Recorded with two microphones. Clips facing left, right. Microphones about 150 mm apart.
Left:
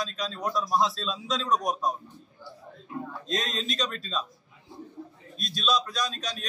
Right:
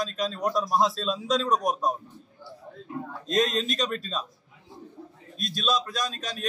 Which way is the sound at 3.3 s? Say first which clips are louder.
Right 7 dB; 45° right (ahead or behind).